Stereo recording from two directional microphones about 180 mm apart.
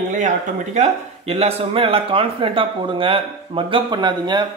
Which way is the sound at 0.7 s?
35° right (ahead or behind).